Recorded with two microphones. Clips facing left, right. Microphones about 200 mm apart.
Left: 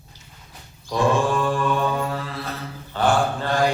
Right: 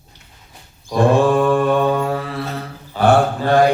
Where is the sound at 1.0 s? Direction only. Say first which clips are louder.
Right 6 dB; 60° right (ahead or behind).